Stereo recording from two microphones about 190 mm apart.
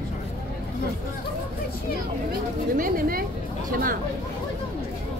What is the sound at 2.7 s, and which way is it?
A woman's voice, 50° right (ahead or behind).